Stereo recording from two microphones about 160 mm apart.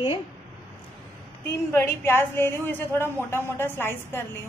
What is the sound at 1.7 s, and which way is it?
A woman's voice, 15° left (ahead or behind).